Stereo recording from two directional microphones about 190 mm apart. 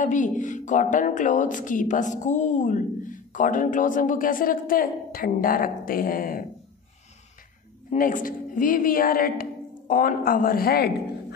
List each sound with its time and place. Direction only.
0.0 s a woman's voice: 40° left (ahead or behind)
7.9 s a woman's voice: 45° left (ahead or behind)